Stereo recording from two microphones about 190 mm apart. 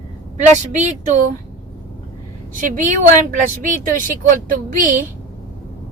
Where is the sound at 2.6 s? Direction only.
45° right (ahead or behind).